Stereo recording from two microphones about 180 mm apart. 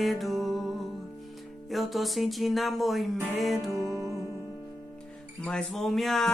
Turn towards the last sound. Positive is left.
turn(degrees=0)  # may be behind; listen again after turning